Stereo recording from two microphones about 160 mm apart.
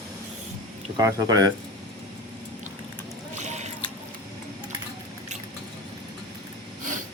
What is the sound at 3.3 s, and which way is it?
Squish, 45° right (ahead or behind).